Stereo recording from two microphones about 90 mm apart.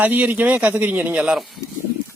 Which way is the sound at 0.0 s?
20° right (ahead or behind).